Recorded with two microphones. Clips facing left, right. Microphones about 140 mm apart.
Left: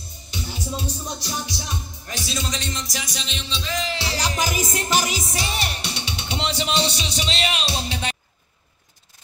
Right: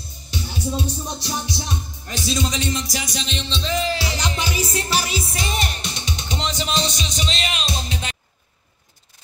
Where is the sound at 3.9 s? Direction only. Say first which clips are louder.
Right 1 dB; 30° left (ahead or behind).